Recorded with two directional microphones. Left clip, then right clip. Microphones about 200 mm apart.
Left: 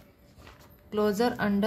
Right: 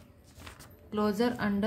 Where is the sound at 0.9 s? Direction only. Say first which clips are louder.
Left 3 dB; 20° left (ahead or behind).